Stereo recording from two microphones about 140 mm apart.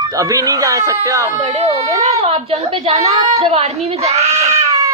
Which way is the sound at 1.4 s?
45° right (ahead or behind).